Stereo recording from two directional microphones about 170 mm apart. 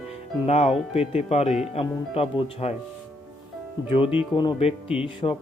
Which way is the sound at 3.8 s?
30° left (ahead or behind).